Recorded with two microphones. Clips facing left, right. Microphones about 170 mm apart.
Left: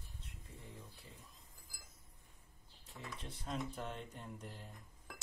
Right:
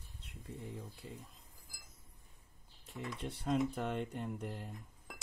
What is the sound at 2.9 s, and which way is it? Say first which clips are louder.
Speech: right 7 dB; 65° right (ahead or behind).